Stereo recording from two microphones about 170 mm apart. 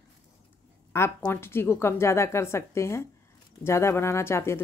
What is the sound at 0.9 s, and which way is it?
A woman's voice, 15° left (ahead or behind).